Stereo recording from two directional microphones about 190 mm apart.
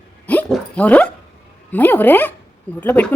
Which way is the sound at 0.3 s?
5° left (ahead or behind).